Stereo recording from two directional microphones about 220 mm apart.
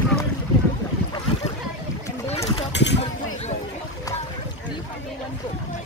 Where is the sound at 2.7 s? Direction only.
55° left (ahead or behind).